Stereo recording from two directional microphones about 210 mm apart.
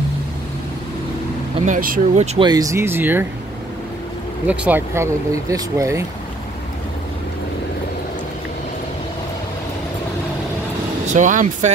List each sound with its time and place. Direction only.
1.7 s speech: 40° right (ahead or behind)
2.3 s speech: 20° right (ahead or behind)
4.5 s speech: 10° right (ahead or behind)
11.1 s speech: 35° right (ahead or behind)